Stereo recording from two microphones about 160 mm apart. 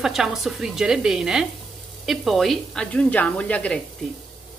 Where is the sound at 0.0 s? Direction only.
Centre (ahead or behind).